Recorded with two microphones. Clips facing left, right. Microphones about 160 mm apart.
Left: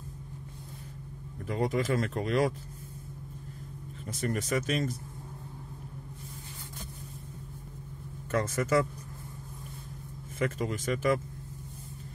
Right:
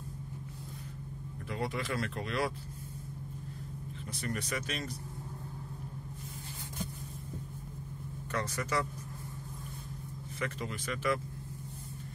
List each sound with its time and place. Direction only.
1.5 s speech: 45° left (ahead or behind)
4.1 s speech: 45° left (ahead or behind)
8.3 s speech: 50° left (ahead or behind)
10.4 s speech: 45° left (ahead or behind)